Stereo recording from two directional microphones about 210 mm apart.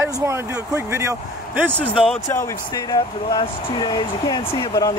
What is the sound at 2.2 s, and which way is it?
Speech, 15° left (ahead or behind).